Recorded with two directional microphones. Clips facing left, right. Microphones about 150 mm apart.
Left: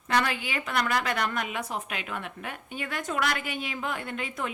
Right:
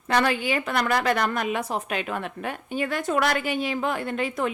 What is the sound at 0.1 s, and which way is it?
A woman's voice, 35° right (ahead or behind).